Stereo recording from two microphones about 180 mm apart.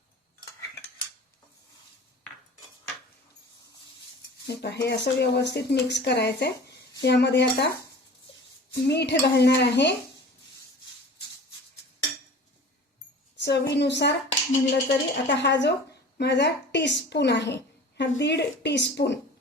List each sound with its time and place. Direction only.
4.4 s a woman's voice: 65° left (ahead or behind)
8.7 s a woman's voice: 65° left (ahead or behind)
13.3 s a woman's voice: 70° left (ahead or behind)